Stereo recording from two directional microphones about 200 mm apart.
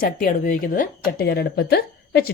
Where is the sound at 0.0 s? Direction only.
45° left (ahead or behind).